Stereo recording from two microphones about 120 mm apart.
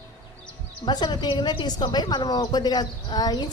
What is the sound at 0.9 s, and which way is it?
A woman's voice, 35° left (ahead or behind).